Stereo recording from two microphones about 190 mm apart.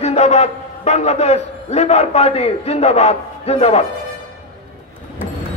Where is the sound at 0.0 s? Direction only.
35° left (ahead or behind).